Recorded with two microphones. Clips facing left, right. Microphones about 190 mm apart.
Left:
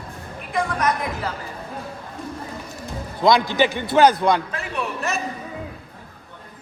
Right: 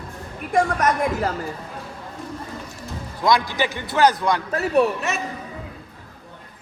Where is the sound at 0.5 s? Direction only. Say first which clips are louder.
Right 3 dB; 45° right (ahead or behind).